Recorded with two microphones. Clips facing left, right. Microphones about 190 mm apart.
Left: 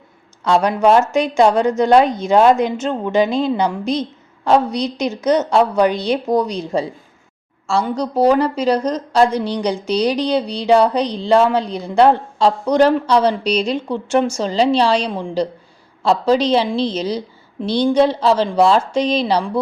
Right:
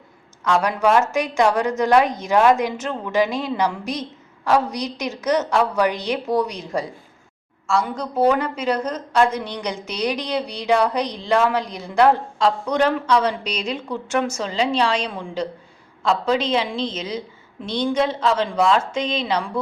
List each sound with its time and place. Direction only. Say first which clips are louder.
0.4 s a woman's voice: left 5 dB; 30° left (ahead or behind)